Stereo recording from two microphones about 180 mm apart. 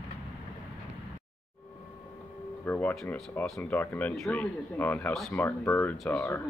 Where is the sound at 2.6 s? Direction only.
10° left (ahead or behind).